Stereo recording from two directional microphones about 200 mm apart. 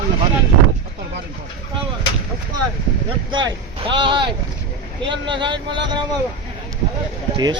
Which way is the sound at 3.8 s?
25° right (ahead or behind).